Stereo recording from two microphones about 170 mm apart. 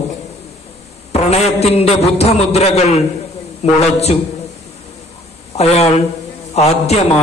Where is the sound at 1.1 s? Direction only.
40° left (ahead or behind).